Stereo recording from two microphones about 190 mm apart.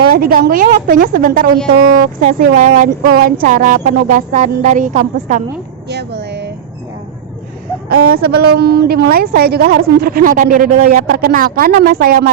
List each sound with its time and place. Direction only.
0.0 s a woman's voice: 50° right (ahead or behind)
5.9 s a sound: 60° right (ahead or behind)
8.2 s a woman's voice: 55° right (ahead or behind)